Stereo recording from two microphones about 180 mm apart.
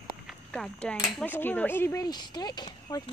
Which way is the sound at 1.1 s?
10° left (ahead or behind).